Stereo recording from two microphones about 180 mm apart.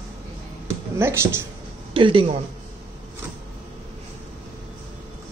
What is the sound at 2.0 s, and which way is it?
Speech, 30° right (ahead or behind).